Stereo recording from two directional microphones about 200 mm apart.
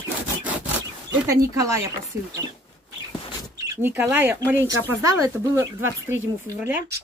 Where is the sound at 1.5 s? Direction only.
15° right (ahead or behind).